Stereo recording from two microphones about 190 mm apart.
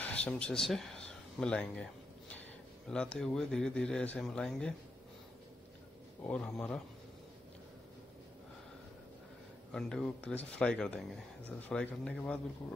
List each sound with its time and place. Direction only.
0.0 s speech: 5° left (ahead or behind)
6.2 s speech: 5° left (ahead or behind)
9.7 s speech: 5° left (ahead or behind)